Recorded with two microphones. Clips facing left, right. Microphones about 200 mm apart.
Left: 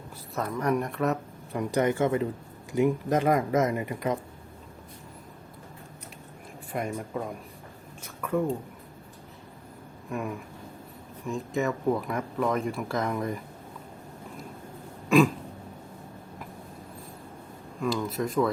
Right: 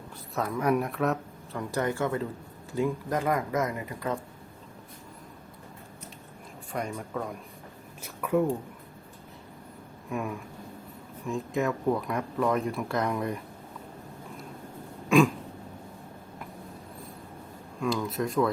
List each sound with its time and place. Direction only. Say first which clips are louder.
0.3 s speech: right 1 dB; 5° right (ahead or behind)
1.5 s speech: left 4 dB; 20° left (ahead or behind)
6.7 s speech: left 2 dB; 5° left (ahead or behind)
8.2 s speech: right 2 dB; 10° right (ahead or behind)
10.1 s speech: even; centre (ahead or behind)
15.1 s a sound: left 1 dB; centre (ahead or behind)
17.7 s speech: even; centre (ahead or behind)